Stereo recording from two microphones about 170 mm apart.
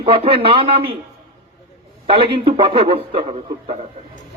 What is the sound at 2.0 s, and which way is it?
Speech, 30° right (ahead or behind).